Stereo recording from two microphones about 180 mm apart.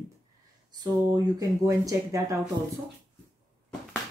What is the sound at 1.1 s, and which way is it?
Speech, 20° right (ahead or behind).